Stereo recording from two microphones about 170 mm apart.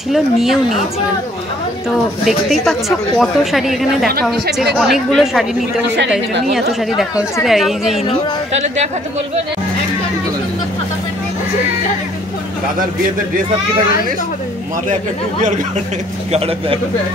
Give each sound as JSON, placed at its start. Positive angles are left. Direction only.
{"t": 0.1, "sound": "a woman's voice", "side_deg": 0}
{"t": 2.2, "sound": "a woman's voice", "side_deg": 0}
{"t": 7.4, "sound": "a woman's voice", "side_deg": 0}
{"t": 16.3, "sound": "a man's voice", "side_deg": -35}